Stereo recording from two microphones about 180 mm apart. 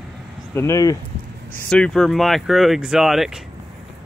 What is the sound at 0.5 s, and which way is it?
Speech, 15° left (ahead or behind).